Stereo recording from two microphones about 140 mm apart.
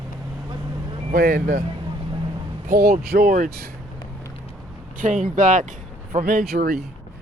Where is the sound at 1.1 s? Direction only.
75° right (ahead or behind).